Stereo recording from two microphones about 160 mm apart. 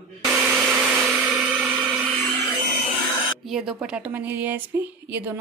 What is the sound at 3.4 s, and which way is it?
Speech, 5° right (ahead or behind).